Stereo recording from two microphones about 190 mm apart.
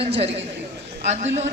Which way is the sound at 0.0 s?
30° right (ahead or behind).